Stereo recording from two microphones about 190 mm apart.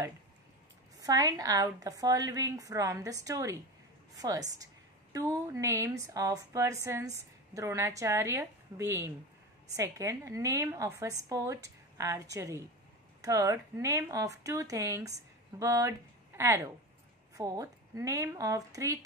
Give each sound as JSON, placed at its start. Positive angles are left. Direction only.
{"t": 0.9, "sound": "a woman's voice", "side_deg": -20}